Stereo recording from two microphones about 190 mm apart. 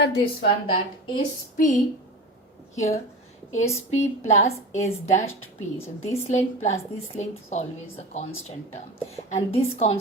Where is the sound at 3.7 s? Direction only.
35° left (ahead or behind).